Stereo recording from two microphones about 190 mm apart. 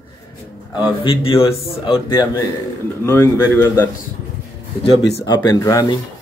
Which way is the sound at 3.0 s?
15° left (ahead or behind).